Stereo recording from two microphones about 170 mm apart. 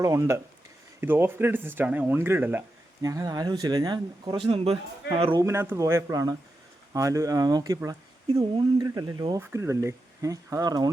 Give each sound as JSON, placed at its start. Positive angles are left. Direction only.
{"t": 0.0, "sound": "speech", "side_deg": -15}
{"t": 4.4, "sound": "a man's voice", "side_deg": -35}
{"t": 5.4, "sound": "speech", "side_deg": -15}
{"t": 8.3, "sound": "a man's voice", "side_deg": -35}
{"t": 9.4, "sound": "speech", "side_deg": -15}